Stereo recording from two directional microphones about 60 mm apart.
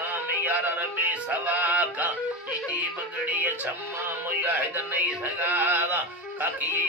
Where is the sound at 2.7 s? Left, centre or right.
Right.